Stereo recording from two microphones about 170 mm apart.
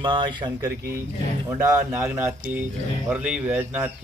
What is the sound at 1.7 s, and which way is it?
Speech, 15° right (ahead or behind).